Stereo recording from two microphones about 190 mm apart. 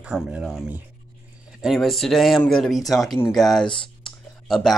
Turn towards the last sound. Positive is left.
turn(degrees=0)  # may be behind; listen again after turning